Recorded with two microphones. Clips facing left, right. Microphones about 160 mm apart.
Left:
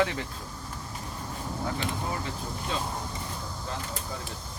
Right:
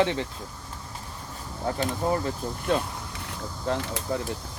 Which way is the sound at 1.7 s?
40° right (ahead or behind).